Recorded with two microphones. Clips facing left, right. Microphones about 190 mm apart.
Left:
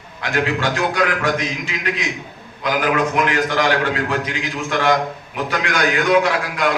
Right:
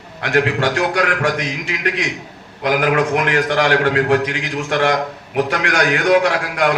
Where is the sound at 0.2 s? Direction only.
65° right (ahead or behind).